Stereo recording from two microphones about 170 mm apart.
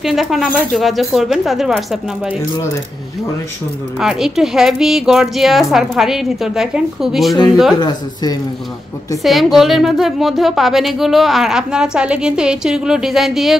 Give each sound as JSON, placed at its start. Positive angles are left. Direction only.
{"t": 0.0, "sound": "a woman's voice", "side_deg": 0}
{"t": 4.0, "sound": "a woman's voice", "side_deg": -5}
{"t": 7.8, "sound": "speech", "side_deg": 25}
{"t": 9.2, "sound": "a woman's voice", "side_deg": 0}